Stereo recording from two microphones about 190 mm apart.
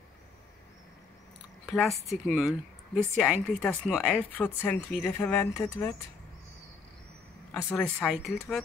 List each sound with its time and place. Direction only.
1.7 s a woman's voice: centre (ahead or behind)
7.5 s speech: 5° left (ahead or behind)